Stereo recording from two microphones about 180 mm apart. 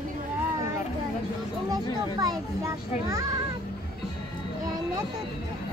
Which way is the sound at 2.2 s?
20° right (ahead or behind).